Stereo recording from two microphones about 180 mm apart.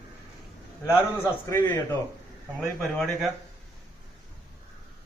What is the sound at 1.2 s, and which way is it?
Speech, 15° left (ahead or behind).